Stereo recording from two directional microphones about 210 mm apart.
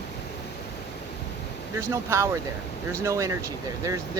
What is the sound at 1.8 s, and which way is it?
Speech, 15° right (ahead or behind).